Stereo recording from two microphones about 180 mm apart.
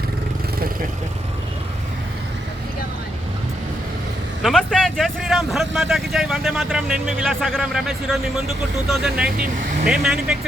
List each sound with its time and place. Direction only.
4.4 s speech: centre (ahead or behind)